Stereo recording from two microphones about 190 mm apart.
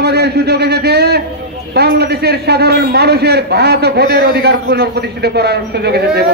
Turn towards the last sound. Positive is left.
turn(degrees=-55)  # may be behind; listen again after turning